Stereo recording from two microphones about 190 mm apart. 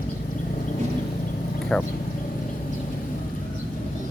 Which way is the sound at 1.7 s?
5° left (ahead or behind).